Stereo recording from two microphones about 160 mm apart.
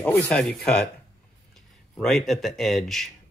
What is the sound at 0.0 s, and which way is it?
Speech, 20° left (ahead or behind).